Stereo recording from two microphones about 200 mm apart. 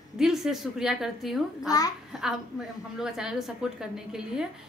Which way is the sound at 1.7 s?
20° left (ahead or behind).